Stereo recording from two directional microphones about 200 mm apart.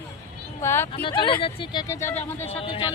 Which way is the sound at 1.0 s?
25° left (ahead or behind).